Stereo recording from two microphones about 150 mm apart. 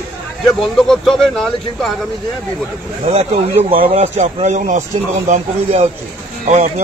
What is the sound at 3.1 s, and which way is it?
Speech, 45° right (ahead or behind).